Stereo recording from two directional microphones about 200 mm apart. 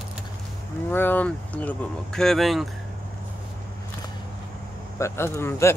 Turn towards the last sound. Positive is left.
turn(degrees=10)  # may be behind; listen again after turning